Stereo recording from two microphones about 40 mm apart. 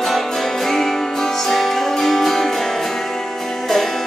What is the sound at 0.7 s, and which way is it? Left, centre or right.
Music, centre.